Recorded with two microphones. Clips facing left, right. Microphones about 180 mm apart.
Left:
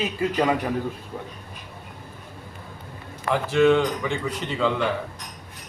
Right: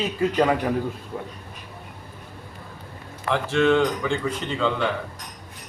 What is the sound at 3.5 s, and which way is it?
A man's voice, 5° left (ahead or behind).